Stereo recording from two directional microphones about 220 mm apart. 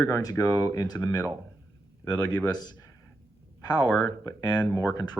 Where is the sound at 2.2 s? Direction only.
20° left (ahead or behind).